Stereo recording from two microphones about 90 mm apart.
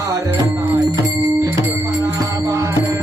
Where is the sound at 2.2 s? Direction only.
40° right (ahead or behind).